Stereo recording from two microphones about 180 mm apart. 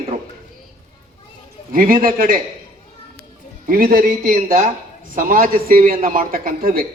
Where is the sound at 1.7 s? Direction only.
50° right (ahead or behind).